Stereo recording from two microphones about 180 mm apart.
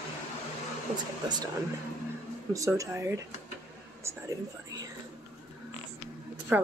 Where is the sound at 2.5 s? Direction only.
20° right (ahead or behind).